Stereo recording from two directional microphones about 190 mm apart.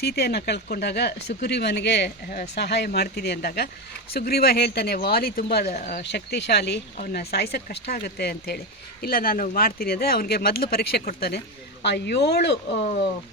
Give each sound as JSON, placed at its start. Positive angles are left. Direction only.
{"t": 0.0, "sound": "speech", "side_deg": 55}